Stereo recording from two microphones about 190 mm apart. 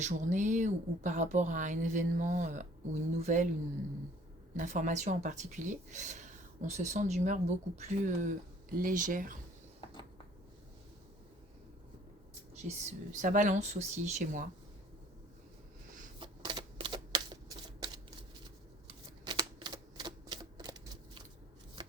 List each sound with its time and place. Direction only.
0.0 s speech: 40° right (ahead or behind)
4.5 s speech: 40° right (ahead or behind)
12.6 s speech: 40° right (ahead or behind)
16.2 s shuffling cards: 25° right (ahead or behind)
19.2 s typewriter: 25° right (ahead or behind)